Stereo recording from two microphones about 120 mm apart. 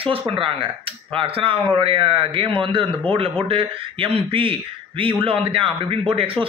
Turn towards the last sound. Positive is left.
turn(degrees=-50)  # may be behind; listen again after turning